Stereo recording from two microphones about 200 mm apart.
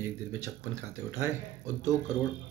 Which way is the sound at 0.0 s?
10° right (ahead or behind).